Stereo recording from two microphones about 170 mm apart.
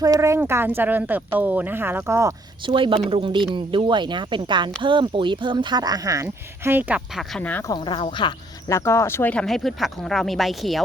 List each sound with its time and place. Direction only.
0.0 s speech: 20° right (ahead or behind)
2.6 s speech: 30° right (ahead or behind); by 7.3 s 10° right (ahead or behind)
7.3 s speech: 10° left (ahead or behind)
7.7 s speech: 30° left (ahead or behind)
8.7 s speech: 15° left (ahead or behind); by 10.8 s centre (ahead or behind)